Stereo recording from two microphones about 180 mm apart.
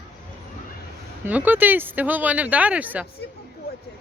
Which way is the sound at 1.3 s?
10° right (ahead or behind).